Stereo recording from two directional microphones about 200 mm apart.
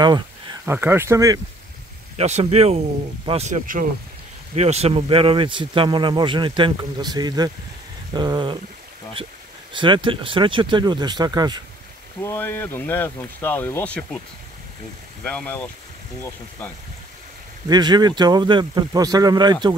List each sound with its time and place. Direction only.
0.0 s speech: 20° right (ahead or behind)
2.1 s speech: 35° right (ahead or behind)
9.7 s speech: 25° right (ahead or behind)
12.2 s speech: 10° left (ahead or behind)
15.2 s speech: 5° left (ahead or behind)
17.6 s speech: 20° right (ahead or behind)